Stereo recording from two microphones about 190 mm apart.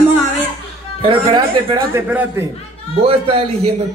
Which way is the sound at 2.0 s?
10° right (ahead or behind).